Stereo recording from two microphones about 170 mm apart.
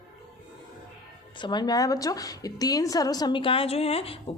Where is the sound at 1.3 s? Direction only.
25° left (ahead or behind).